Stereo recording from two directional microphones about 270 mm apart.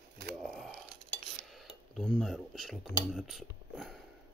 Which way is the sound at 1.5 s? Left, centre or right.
Centre.